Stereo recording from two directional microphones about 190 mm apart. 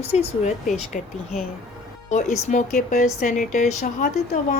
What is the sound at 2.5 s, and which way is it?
Speech, 40° left (ahead or behind).